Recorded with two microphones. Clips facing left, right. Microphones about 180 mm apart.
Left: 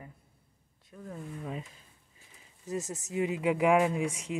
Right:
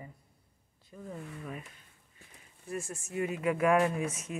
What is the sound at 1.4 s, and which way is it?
Speech, 25° left (ahead or behind).